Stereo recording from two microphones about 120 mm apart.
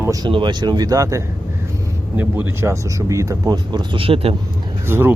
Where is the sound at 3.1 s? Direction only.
25° right (ahead or behind); by 4.3 s 50° right (ahead or behind).